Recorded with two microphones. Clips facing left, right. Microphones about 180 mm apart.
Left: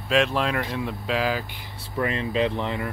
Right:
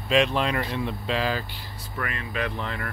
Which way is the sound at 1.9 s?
25° left (ahead or behind).